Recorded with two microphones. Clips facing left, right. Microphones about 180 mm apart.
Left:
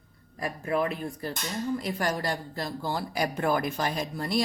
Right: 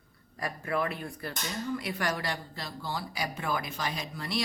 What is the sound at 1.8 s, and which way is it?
Speech, 40° left (ahead or behind).